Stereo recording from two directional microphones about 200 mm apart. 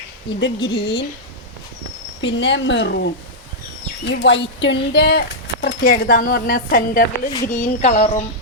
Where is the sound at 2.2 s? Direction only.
65° left (ahead or behind).